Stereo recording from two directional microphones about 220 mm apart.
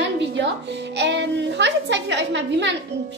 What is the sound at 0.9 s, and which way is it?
A woman's voice, 50° right (ahead or behind).